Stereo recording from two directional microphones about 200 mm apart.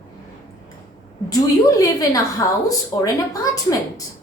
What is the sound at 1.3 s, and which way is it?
A woman's voice, 15° left (ahead or behind).